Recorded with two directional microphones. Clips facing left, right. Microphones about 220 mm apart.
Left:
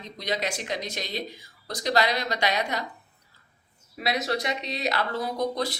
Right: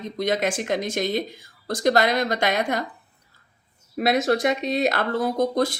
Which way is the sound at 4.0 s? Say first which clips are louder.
Right 8 dB; 50° right (ahead or behind).